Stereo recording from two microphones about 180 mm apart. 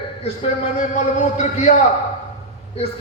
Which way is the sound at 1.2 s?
40° left (ahead or behind).